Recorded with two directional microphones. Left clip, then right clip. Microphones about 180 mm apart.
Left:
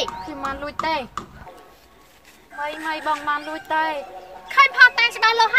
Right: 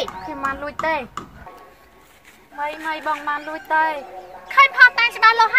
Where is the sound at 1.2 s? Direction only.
60° right (ahead or behind).